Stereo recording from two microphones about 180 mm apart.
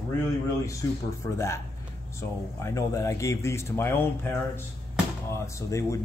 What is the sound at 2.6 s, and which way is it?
Speech, 15° left (ahead or behind).